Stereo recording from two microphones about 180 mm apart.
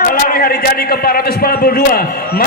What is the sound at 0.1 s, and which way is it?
A man's voice, 50° left (ahead or behind).